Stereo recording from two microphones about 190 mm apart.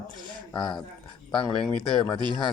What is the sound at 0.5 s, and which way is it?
Speech, 25° left (ahead or behind).